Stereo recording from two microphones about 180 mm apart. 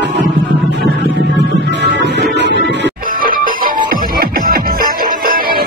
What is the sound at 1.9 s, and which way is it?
Music, 75° right (ahead or behind).